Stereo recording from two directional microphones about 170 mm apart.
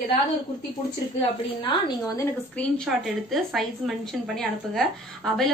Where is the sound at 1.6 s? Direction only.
25° left (ahead or behind).